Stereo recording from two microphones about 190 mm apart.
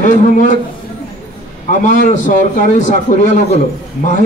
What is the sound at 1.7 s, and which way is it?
A man's voice, 40° left (ahead or behind).